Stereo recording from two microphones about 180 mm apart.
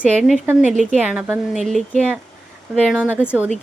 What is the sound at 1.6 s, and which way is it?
Speech, 5° left (ahead or behind).